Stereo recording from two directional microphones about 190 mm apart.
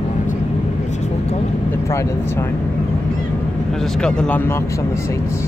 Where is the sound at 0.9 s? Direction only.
35° left (ahead or behind).